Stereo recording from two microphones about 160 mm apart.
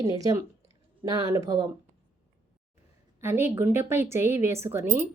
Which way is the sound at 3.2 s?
15° right (ahead or behind).